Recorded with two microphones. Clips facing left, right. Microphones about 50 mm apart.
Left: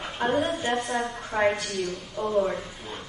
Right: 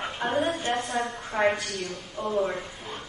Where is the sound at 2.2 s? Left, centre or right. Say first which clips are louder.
Left 2 dB; centre.